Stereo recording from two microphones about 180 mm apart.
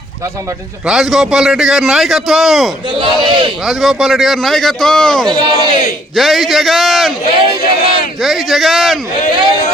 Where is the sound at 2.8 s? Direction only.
30° right (ahead or behind).